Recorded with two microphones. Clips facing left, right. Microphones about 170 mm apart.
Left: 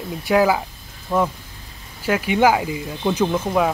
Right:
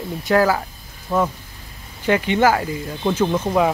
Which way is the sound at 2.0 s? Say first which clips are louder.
Even; 5° left (ahead or behind).